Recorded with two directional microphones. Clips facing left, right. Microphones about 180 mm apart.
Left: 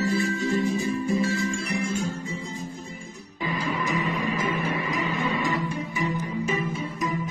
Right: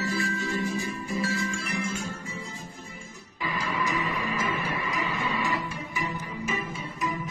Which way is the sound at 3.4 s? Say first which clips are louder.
Left 3 dB; 25° left (ahead or behind).